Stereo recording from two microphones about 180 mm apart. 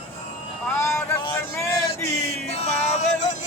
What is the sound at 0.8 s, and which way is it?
Vehicle, 15° left (ahead or behind).